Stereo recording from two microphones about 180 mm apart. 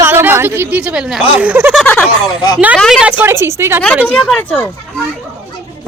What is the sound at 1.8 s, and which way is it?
Speech, 5° left (ahead or behind).